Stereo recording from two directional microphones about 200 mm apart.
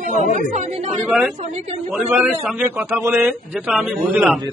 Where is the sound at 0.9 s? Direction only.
Centre (ahead or behind).